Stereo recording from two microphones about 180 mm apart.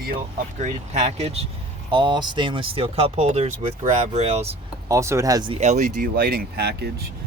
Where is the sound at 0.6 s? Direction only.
35° right (ahead or behind).